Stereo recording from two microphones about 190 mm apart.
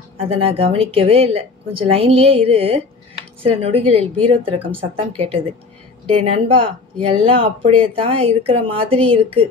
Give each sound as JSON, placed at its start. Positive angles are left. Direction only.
{"t": 0.2, "sound": "a woman's voice", "side_deg": -30}